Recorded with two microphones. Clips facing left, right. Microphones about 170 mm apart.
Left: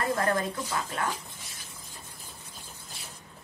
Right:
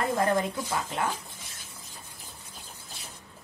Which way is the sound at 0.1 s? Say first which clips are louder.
Right 2 dB; 20° right (ahead or behind).